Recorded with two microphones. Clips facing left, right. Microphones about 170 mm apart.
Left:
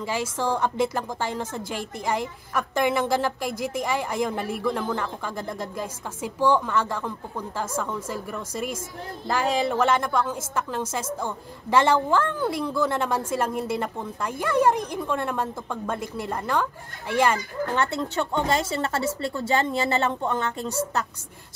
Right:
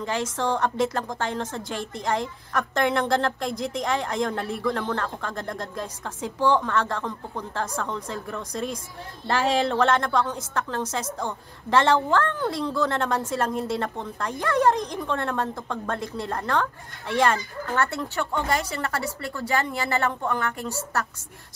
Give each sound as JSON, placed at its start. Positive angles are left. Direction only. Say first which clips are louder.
{"t": 0.0, "sound": "a woman's voice", "louder": "even", "side_deg": 10}